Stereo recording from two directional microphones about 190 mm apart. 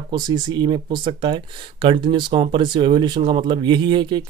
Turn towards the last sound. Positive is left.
turn(degrees=-25)  # may be behind; listen again after turning